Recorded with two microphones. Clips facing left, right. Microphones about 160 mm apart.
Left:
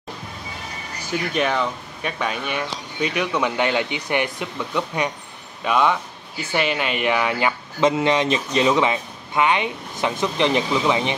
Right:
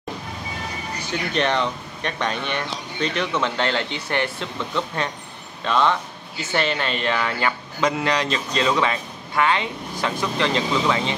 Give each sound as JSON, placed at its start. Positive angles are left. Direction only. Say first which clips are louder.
{"t": 1.1, "sound": "speech", "louder": "left 1 dB", "side_deg": 5}